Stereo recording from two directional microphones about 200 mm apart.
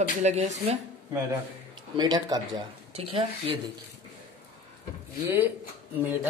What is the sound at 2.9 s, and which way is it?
Speech, 30° right (ahead or behind).